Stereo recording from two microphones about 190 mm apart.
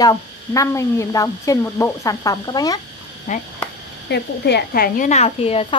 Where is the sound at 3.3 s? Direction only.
40° left (ahead or behind).